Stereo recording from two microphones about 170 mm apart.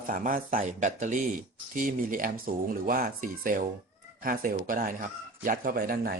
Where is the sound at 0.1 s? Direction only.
50° right (ahead or behind).